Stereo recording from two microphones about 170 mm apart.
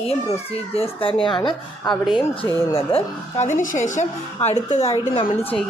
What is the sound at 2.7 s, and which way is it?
Speech, 40° left (ahead or behind).